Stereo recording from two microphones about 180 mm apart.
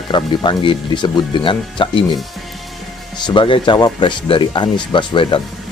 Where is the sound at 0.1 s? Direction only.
25° left (ahead or behind).